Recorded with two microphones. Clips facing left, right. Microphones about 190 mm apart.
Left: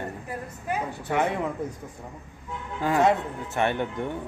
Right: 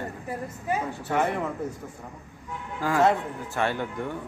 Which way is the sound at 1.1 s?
10° left (ahead or behind).